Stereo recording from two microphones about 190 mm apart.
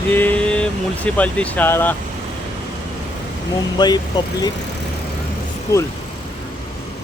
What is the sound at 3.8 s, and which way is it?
Speech, 20° left (ahead or behind).